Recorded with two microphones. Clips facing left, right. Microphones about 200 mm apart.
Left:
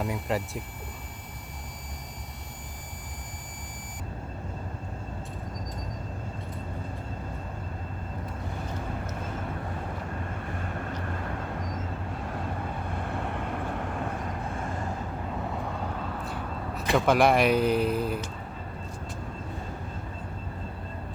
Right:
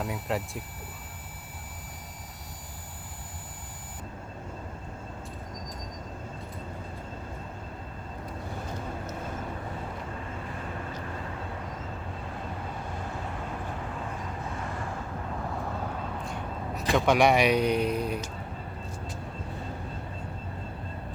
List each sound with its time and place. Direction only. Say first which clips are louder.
0.0 s speech: left 2 dB; centre (ahead or behind)
13.1 s vehicle: left 4 dB; 60° left (ahead or behind)
16.2 s vehicle: left 1 dB; 5° left (ahead or behind)
16.9 s speech: left 1 dB; centre (ahead or behind)